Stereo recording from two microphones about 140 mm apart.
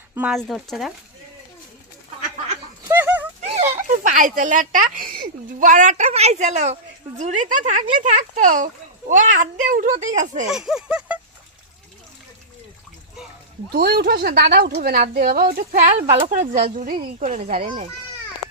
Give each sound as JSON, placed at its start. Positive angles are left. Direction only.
{"t": 0.3, "sound": "speech", "side_deg": 0}
{"t": 2.9, "sound": "a sound", "side_deg": -15}
{"t": 3.5, "sound": "speech", "side_deg": -50}
{"t": 10.5, "sound": "speech", "side_deg": -5}
{"t": 13.7, "sound": "a woman's voice", "side_deg": -90}
{"t": 16.3, "sound": "speech", "side_deg": -60}
{"t": 16.8, "sound": "speech", "side_deg": -85}